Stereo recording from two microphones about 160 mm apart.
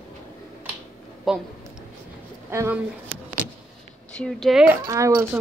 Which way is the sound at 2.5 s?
15° right (ahead or behind).